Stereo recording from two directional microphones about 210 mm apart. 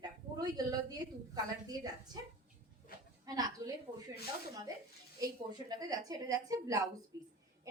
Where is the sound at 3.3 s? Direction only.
15° right (ahead or behind).